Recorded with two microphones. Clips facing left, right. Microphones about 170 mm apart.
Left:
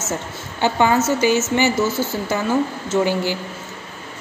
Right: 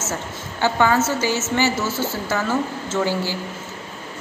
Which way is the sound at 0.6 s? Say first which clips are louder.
Left 1 dB; 20° left (ahead or behind).